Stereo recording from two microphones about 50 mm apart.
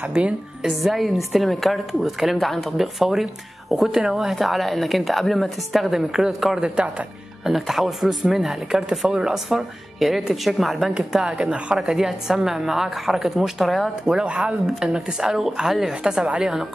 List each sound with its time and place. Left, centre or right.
0.2 s speech: right
0.7 s a woman's voice: centre
7.4 s a woman's voice: centre
11.0 s a woman's voice: centre
11.8 s a woman's voice: centre
14.0 s a woman's voice: centre